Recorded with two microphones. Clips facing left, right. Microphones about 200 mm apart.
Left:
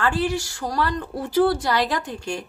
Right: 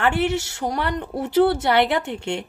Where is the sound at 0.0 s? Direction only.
25° right (ahead or behind).